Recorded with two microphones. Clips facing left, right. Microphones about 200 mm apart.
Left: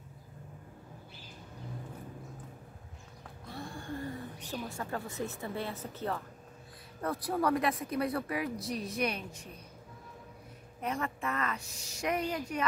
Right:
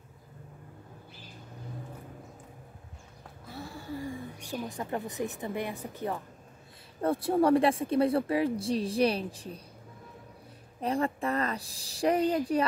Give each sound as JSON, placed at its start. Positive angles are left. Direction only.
{"t": 3.4, "sound": "a woman's voice", "side_deg": -5}
{"t": 7.0, "sound": "speech", "side_deg": -25}
{"t": 10.8, "sound": "a woman's voice", "side_deg": -30}